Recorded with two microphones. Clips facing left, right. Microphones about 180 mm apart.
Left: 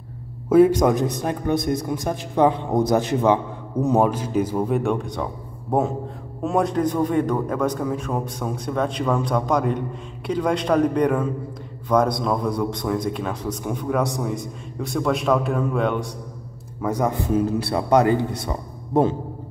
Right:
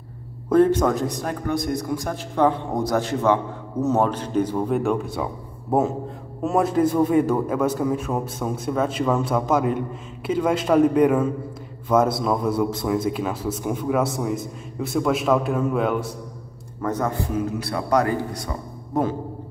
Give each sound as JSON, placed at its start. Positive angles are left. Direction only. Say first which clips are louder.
{"t": 0.5, "sound": "a man's voice", "louder": "left 2 dB", "side_deg": 10}
{"t": 16.8, "sound": "a man's voice", "louder": "left 2 dB", "side_deg": 15}
{"t": 17.3, "sound": "a man's voice", "louder": "left 4 dB", "side_deg": 30}